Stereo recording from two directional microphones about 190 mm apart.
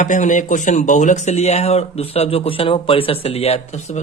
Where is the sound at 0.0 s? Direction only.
40° left (ahead or behind).